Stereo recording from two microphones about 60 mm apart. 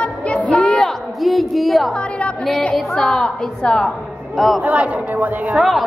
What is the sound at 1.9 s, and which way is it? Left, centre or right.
A child's voice, left.